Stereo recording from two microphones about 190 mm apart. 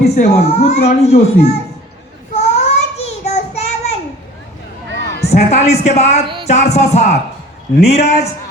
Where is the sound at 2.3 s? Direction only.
35° left (ahead or behind).